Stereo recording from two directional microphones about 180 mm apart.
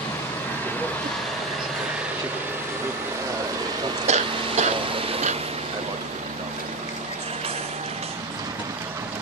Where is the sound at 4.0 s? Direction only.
40° right (ahead or behind).